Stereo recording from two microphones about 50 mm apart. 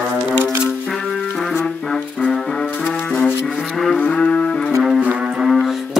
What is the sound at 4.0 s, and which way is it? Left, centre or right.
Music, left.